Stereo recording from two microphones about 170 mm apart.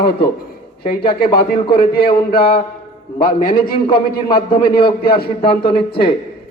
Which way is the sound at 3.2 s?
55° left (ahead or behind).